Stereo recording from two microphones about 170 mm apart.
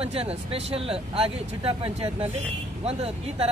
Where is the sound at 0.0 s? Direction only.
35° right (ahead or behind).